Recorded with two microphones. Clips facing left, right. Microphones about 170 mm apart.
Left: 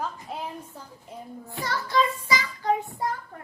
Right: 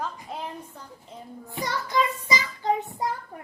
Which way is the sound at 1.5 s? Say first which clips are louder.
Left 1 dB; 20° right (ahead or behind).